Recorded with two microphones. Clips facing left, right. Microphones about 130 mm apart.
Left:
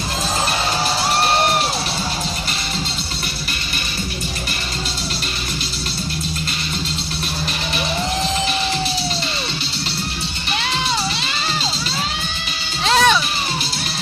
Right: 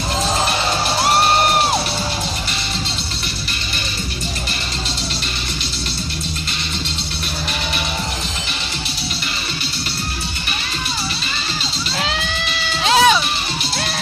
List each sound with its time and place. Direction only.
12.8 s music: 5° right (ahead or behind)